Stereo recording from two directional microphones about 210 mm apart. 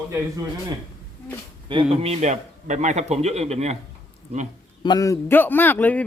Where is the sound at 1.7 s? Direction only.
25° right (ahead or behind).